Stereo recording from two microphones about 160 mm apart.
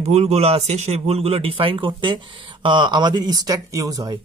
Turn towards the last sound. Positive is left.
turn(degrees=-25)  # may be behind; listen again after turning